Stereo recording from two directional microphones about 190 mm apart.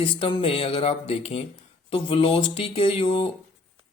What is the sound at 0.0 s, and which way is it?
Speech, 25° left (ahead or behind).